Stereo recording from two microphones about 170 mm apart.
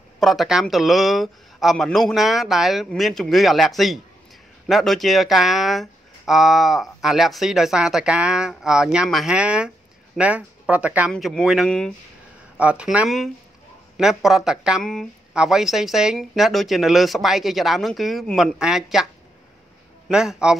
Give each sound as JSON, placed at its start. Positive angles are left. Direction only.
{"t": 0.2, "sound": "speech", "side_deg": 0}
{"t": 11.1, "sound": "speech", "side_deg": 0}
{"t": 20.1, "sound": "speech", "side_deg": -5}